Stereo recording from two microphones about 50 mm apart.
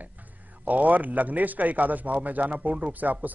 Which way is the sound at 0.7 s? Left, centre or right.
Right.